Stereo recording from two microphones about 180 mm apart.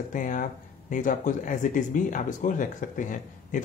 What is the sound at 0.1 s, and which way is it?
Speech, 45° left (ahead or behind).